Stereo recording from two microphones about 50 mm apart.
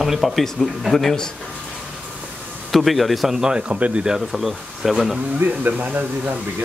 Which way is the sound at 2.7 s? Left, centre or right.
Centre.